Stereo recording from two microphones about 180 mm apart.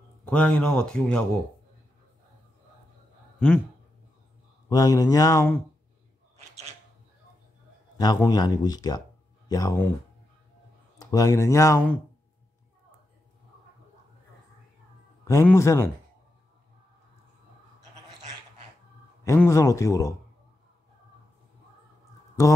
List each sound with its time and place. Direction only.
0.2 s a man's voice: 5° left (ahead or behind)
3.3 s speech: 10° left (ahead or behind)
4.6 s speech: 20° left (ahead or behind)
8.0 s speech: 20° left (ahead or behind)
11.0 s speech: 20° left (ahead or behind)
15.4 s speech: 15° left (ahead or behind)
19.2 s speech: 15° left (ahead or behind)